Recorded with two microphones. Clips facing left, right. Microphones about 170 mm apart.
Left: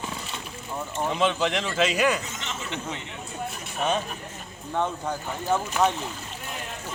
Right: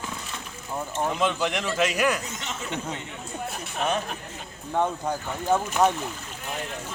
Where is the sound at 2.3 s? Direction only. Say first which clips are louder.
Right 1 dB; 35° right (ahead or behind).